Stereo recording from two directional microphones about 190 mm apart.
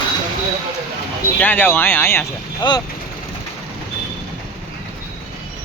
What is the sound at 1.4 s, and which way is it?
Speech, 10° left (ahead or behind).